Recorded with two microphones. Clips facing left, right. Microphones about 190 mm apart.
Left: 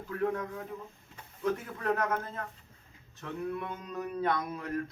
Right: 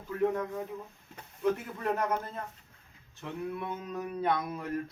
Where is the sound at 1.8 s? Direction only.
15° right (ahead or behind).